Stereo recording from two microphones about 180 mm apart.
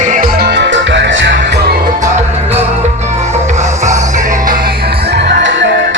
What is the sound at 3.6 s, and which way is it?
Music, 40° right (ahead or behind).